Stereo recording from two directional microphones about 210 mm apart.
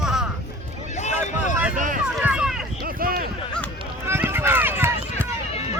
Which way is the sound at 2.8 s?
45° right (ahead or behind).